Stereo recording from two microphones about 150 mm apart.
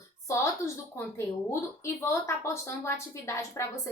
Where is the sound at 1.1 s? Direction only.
15° left (ahead or behind).